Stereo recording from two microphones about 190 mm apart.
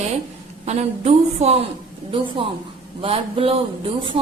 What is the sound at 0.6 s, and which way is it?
Speech, 35° right (ahead or behind).